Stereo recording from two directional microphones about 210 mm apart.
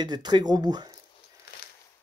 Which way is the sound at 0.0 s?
20° right (ahead or behind).